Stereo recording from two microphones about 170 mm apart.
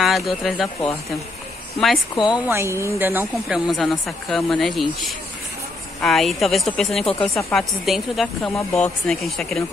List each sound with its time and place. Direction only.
0.0 s speech: centre (ahead or behind)
2.1 s a woman's voice: 25° left (ahead or behind)
2.4 s speech: 15° right (ahead or behind); by 4.8 s centre (ahead or behind)
5.9 s speech: centre (ahead or behind)